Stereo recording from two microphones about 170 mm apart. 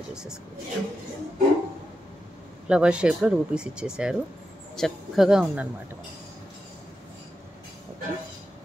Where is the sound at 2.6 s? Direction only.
5° right (ahead or behind).